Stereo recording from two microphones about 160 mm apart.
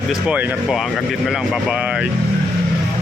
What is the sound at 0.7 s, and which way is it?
Speech, centre (ahead or behind).